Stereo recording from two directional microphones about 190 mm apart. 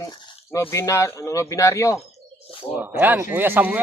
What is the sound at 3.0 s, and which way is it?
Speech, 10° right (ahead or behind).